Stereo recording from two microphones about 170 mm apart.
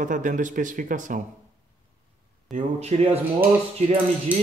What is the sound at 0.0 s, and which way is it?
Speech, 50° right (ahead or behind).